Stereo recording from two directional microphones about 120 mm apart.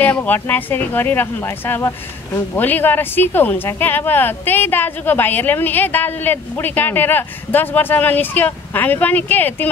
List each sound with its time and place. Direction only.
0.0 s speech: 10° left (ahead or behind)